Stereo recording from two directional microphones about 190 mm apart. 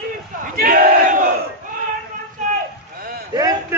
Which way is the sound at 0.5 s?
50° right (ahead or behind).